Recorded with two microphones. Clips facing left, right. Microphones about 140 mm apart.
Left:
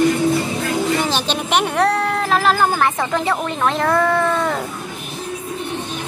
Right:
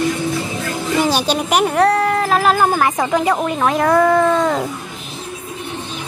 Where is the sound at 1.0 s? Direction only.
10° right (ahead or behind).